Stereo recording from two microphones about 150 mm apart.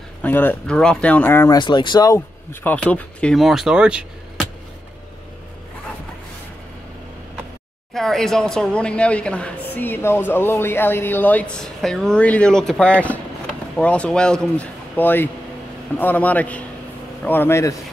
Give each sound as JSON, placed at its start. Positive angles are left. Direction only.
{"t": 0.2, "sound": "speech", "side_deg": 10}
{"t": 1.6, "sound": "speech", "side_deg": 30}
{"t": 2.6, "sound": "a woman's voice", "side_deg": 10}
{"t": 7.9, "sound": "a woman's voice", "side_deg": 5}